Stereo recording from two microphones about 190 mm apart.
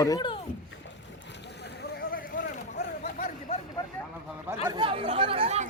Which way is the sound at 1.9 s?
50° left (ahead or behind).